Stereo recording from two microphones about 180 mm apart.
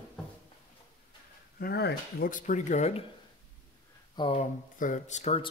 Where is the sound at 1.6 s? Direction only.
60° left (ahead or behind); by 3.0 s 40° left (ahead or behind).